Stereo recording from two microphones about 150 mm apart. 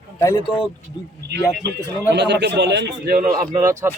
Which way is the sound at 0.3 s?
35° left (ahead or behind).